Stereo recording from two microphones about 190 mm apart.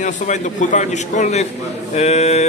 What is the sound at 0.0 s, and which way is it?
A man's voice, 40° left (ahead or behind).